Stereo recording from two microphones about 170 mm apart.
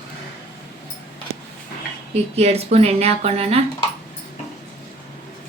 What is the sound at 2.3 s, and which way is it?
Speech, 35° right (ahead or behind).